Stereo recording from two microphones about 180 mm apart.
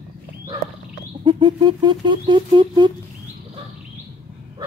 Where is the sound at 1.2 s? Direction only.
25° right (ahead or behind).